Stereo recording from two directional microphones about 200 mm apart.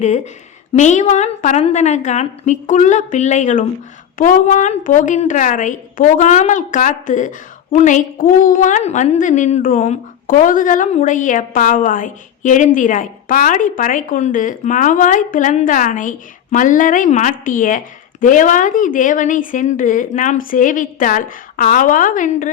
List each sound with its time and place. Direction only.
0.7 s a woman's voice: 35° left (ahead or behind)